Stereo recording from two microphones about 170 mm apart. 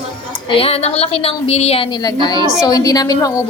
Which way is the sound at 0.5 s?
35° left (ahead or behind).